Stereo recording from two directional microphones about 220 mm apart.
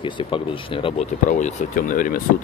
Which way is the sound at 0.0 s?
25° left (ahead or behind).